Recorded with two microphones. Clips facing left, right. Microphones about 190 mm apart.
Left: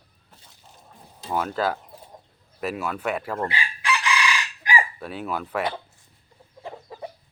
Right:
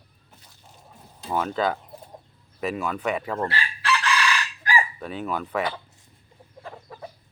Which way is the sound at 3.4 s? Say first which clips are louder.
Right 1 dB; 15° left (ahead or behind).